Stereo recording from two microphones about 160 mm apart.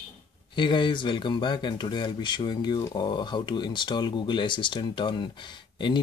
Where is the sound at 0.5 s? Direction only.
30° left (ahead or behind).